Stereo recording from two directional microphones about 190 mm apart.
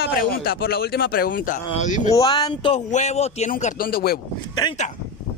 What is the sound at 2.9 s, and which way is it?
A man's voice, 35° left (ahead or behind).